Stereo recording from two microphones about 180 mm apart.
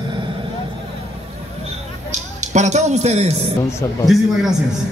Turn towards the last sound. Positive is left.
turn(degrees=0)  # may be behind; listen again after turning